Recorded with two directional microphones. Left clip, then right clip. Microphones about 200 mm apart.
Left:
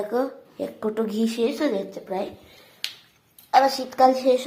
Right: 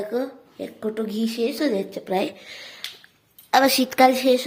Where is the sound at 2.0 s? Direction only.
45° right (ahead or behind).